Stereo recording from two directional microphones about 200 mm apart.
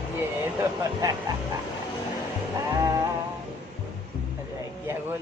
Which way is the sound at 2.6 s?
15° right (ahead or behind).